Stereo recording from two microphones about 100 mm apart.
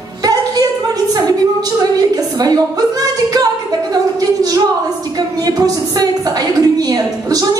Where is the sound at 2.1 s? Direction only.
40° right (ahead or behind).